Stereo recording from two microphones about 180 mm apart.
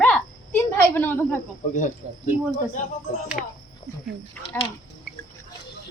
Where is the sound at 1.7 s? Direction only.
45° left (ahead or behind).